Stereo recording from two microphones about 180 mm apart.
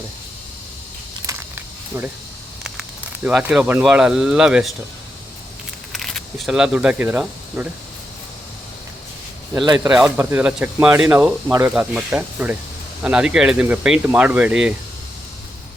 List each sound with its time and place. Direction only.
1.3 s a sound: 10° right (ahead or behind)
3.2 s speech: 5° right (ahead or behind)
5.9 s speech: centre (ahead or behind)
9.6 s speech: 20° right (ahead or behind)
9.9 s speech: 5° right (ahead or behind)